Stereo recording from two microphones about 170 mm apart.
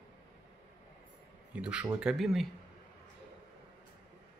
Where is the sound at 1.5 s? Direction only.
5° right (ahead or behind).